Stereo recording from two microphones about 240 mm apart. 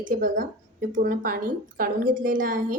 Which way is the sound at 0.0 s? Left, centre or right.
Right.